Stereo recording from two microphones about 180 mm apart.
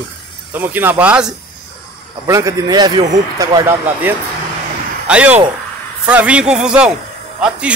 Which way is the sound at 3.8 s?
10° right (ahead or behind).